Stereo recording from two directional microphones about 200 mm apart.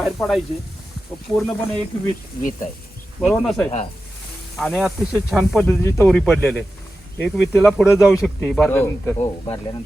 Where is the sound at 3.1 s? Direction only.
Centre (ahead or behind).